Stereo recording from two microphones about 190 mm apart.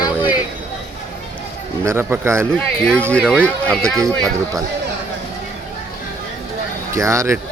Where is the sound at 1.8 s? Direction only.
15° right (ahead or behind).